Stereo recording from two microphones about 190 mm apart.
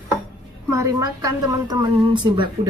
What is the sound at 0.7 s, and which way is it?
A woman's voice, 15° right (ahead or behind).